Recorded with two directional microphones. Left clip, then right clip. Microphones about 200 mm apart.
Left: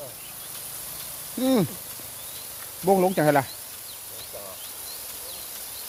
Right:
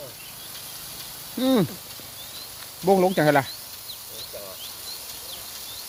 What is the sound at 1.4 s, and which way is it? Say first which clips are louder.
Speech: right 1 dB; 5° right (ahead or behind).